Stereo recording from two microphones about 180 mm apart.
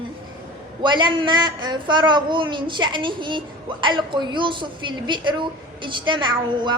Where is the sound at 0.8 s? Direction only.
25° right (ahead or behind).